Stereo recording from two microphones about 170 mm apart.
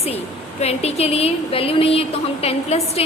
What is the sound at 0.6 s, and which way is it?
Speech, 35° left (ahead or behind).